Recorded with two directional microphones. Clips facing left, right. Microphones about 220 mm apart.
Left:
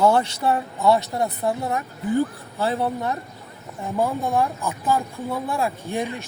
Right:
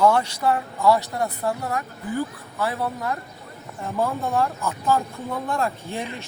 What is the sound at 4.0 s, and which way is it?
Speech, 15° left (ahead or behind).